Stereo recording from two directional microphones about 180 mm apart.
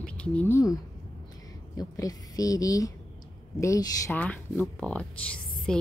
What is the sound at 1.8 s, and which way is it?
A woman's voice, 20° left (ahead or behind).